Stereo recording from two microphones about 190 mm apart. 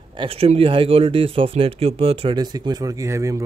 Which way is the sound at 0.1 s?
30° right (ahead or behind).